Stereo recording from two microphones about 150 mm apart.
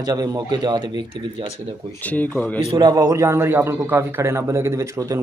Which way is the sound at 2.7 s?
25° right (ahead or behind).